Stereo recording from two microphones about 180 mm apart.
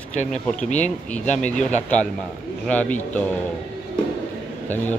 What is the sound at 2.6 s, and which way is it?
Speech, 10° left (ahead or behind).